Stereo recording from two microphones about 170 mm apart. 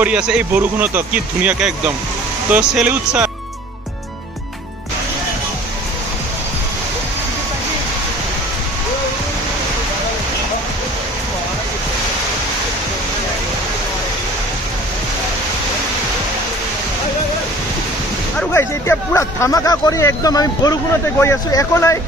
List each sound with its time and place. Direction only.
0.0 s speech: 5° right (ahead or behind)
18.5 s a sound: 15° left (ahead or behind)
21.2 s speech: 20° left (ahead or behind)